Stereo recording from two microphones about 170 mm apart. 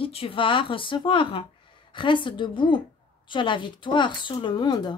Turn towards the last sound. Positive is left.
turn(degrees=25)  # may be behind; listen again after turning